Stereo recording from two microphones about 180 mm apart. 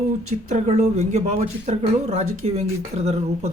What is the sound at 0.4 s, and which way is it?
Speech, 40° right (ahead or behind).